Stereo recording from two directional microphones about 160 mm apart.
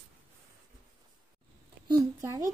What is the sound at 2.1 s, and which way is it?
Speech, 20° right (ahead or behind).